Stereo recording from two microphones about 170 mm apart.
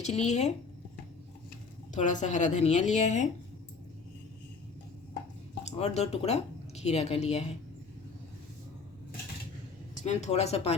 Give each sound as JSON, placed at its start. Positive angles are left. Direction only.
{"t": 0.0, "sound": "speech", "side_deg": 40}
{"t": 1.9, "sound": "speech", "side_deg": 45}
{"t": 5.6, "sound": "a woman's voice", "side_deg": 40}
{"t": 10.0, "sound": "speech", "side_deg": 45}